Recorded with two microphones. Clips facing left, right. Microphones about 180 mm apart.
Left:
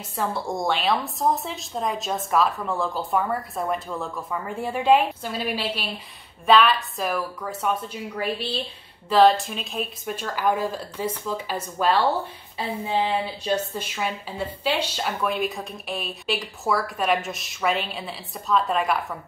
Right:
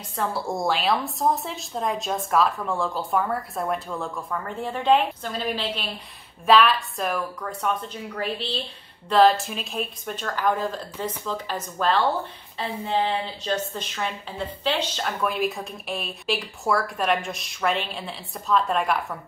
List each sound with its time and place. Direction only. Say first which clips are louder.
0.1 s a woman's voice: even; centre (ahead or behind)
13.2 s a woman's voice: left 2 dB; 10° left (ahead or behind)